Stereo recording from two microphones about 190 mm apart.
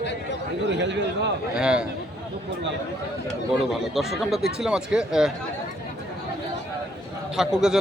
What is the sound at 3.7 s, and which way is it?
A man's voice, centre (ahead or behind).